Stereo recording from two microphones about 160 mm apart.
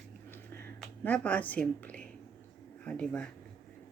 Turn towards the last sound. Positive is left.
turn(degrees=5)  # may be behind; listen again after turning